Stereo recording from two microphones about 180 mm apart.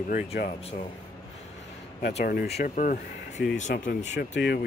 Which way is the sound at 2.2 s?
60° left (ahead or behind).